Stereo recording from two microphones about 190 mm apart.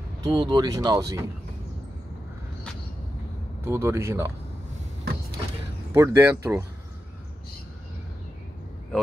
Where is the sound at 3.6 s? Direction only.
15° right (ahead or behind).